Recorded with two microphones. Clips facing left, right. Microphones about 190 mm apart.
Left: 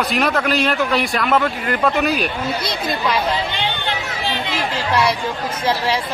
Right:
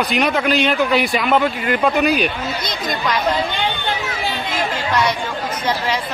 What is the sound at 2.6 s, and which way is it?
Speech, 30° left (ahead or behind).